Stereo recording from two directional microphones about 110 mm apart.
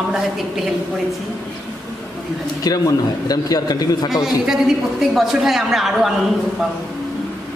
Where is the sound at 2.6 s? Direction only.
35° left (ahead or behind).